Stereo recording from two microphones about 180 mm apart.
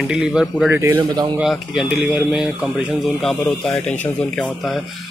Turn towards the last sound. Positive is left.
turn(degrees=0)  # may be behind; listen again after turning